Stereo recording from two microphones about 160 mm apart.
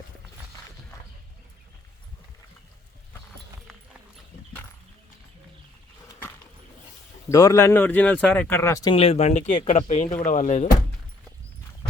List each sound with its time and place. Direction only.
7.3 s speech: 20° left (ahead or behind)
9.0 s speech: 40° left (ahead or behind)
10.1 s speech: 55° left (ahead or behind)